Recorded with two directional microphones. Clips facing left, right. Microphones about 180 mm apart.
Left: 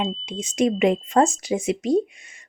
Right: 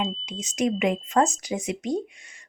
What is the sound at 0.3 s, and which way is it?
Speech, 30° left (ahead or behind).